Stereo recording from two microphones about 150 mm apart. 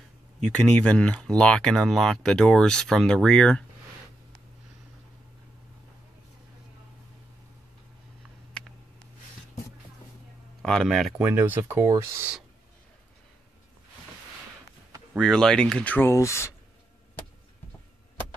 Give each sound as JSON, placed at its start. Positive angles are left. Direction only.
{"t": 0.4, "sound": "speech", "side_deg": 5}
{"t": 10.6, "sound": "speech", "side_deg": 5}
{"t": 11.1, "sound": "speech", "side_deg": -10}
{"t": 15.1, "sound": "speech", "side_deg": 5}